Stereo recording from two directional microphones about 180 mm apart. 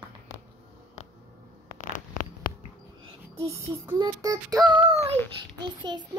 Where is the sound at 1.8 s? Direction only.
45° left (ahead or behind).